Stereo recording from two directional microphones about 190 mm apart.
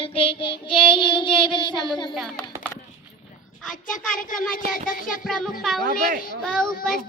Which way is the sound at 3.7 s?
45° left (ahead or behind).